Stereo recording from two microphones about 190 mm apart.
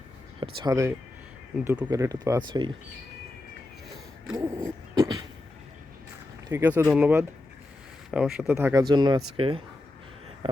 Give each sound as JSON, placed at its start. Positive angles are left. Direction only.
{"t": 0.3, "sound": "speech", "side_deg": -25}
{"t": 1.5, "sound": "speech", "side_deg": -5}
{"t": 1.9, "sound": "speech", "side_deg": -20}
{"t": 4.3, "sound": "a sound", "side_deg": -15}
{"t": 6.5, "sound": "speech", "side_deg": -10}
{"t": 10.4, "sound": "a sound", "side_deg": -30}